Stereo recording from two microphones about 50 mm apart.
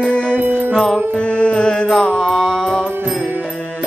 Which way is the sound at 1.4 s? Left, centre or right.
Centre.